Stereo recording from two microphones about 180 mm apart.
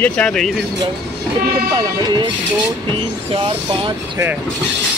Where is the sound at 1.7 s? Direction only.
25° right (ahead or behind).